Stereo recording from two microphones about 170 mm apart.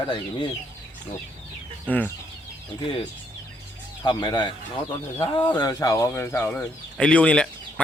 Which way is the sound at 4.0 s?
25° left (ahead or behind).